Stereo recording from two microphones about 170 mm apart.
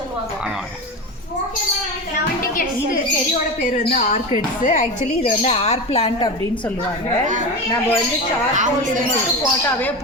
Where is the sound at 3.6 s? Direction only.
55° left (ahead or behind).